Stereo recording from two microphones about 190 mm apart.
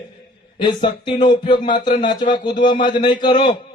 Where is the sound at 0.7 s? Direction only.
25° left (ahead or behind).